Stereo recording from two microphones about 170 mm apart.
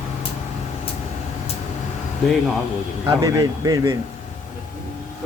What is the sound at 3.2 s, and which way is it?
Speech, 20° right (ahead or behind).